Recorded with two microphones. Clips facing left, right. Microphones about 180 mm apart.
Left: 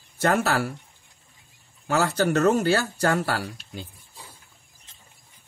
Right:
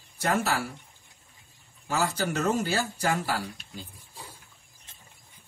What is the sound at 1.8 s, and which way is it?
Speech, 70° left (ahead or behind).